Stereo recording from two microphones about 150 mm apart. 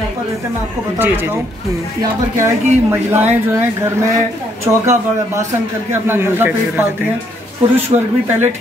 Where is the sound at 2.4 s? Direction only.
15° right (ahead or behind).